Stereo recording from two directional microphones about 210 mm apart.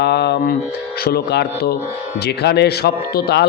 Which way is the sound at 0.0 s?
50° left (ahead or behind).